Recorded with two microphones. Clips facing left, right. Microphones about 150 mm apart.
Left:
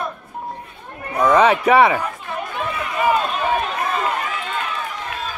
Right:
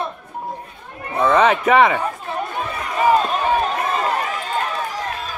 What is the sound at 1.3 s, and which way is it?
Speech, 5° left (ahead or behind).